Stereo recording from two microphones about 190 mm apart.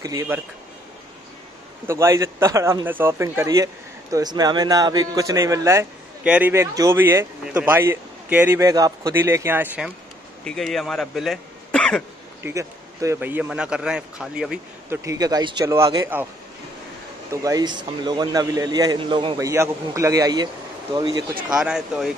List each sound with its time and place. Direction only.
0.0 s a man's voice: 20° right (ahead or behind)
1.9 s a man's voice: 15° right (ahead or behind)
10.4 s speech: centre (ahead or behind)
12.4 s a man's voice: 15° right (ahead or behind)
15.0 s a man's voice: 20° right (ahead or behind)
21.5 s a man's voice: 5° right (ahead or behind)